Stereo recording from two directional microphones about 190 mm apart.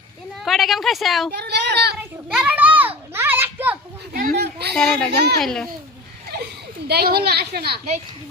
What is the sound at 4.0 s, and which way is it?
Speech, 55° right (ahead or behind).